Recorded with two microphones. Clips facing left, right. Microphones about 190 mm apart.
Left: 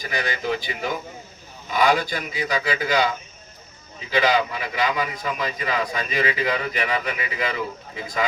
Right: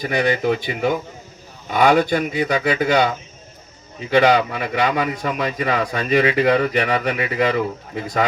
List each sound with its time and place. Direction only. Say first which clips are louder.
0.4 s speech: right 6 dB; 60° right (ahead or behind)
4.1 s speech: right 6 dB; 65° right (ahead or behind)